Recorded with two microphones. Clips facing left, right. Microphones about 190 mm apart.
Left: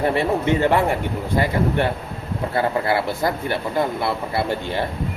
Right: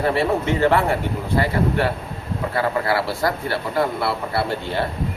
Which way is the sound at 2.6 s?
20° left (ahead or behind).